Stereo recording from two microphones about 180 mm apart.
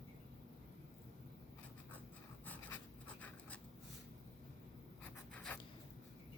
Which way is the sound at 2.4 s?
10° left (ahead or behind).